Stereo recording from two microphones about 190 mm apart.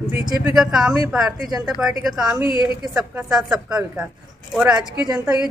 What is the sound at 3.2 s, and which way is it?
Speech, centre (ahead or behind).